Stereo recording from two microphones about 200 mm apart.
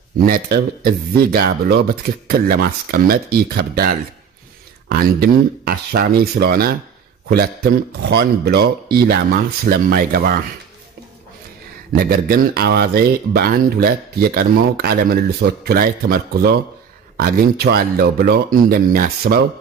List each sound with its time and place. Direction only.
0.2 s speech: 45° right (ahead or behind)
12.0 s speech: 50° right (ahead or behind)